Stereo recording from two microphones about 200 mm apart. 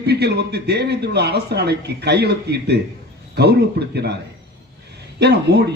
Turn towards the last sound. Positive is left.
turn(degrees=-55)  # may be behind; listen again after turning